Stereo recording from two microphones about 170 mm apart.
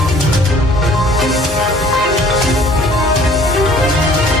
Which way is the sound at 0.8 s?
Centre (ahead or behind).